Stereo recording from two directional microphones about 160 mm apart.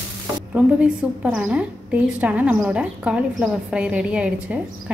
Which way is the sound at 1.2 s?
5° right (ahead or behind).